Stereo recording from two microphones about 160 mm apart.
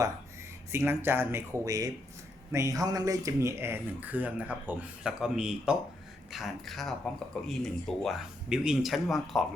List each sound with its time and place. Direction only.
0.7 s speech: 15° right (ahead or behind)